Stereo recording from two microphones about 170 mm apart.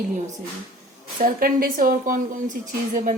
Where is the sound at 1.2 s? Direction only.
55° right (ahead or behind).